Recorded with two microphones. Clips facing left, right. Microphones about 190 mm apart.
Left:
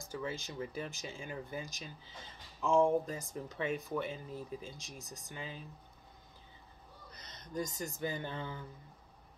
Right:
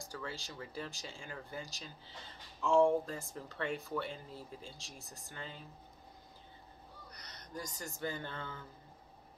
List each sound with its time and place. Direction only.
0.1 s speech: 20° left (ahead or behind)
7.1 s speech: 25° left (ahead or behind)